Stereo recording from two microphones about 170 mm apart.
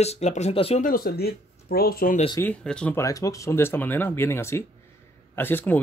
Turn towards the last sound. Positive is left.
turn(degrees=10)  # may be behind; listen again after turning